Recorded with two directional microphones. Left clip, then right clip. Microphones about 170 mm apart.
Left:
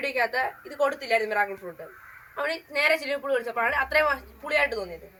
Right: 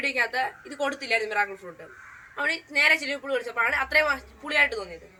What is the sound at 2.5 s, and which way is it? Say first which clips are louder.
A woman's voice: right 3 dB; 5° left (ahead or behind).